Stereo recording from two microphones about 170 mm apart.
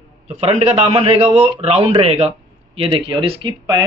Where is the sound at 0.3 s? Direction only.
40° right (ahead or behind).